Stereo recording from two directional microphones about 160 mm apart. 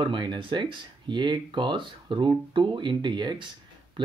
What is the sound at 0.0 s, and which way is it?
Speech, 30° right (ahead or behind).